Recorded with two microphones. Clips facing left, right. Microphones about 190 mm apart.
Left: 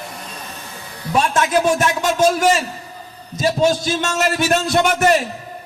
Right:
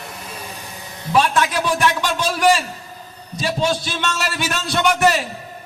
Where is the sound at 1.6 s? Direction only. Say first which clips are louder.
Left 3 dB; 45° left (ahead or behind).